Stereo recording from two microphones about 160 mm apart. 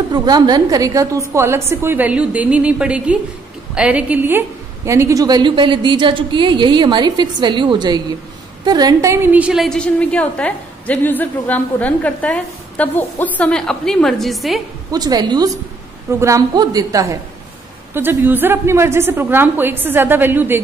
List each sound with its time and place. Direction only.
0.1 s a woman's voice: 25° right (ahead or behind); by 14.6 s centre (ahead or behind)
14.9 s a woman's voice: 25° right (ahead or behind)